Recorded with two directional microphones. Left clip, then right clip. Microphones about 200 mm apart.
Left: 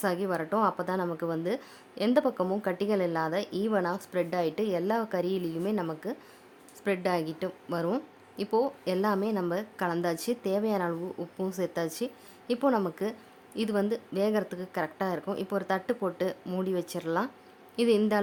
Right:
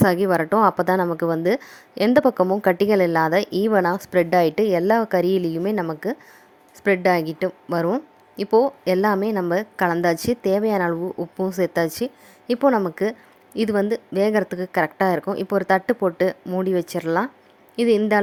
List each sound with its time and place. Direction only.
0.0 s a woman's voice: 35° right (ahead or behind)